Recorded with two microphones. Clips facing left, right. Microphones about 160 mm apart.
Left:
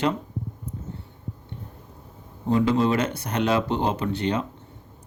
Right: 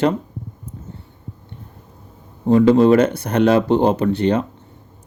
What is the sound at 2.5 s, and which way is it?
Speech, 55° right (ahead or behind).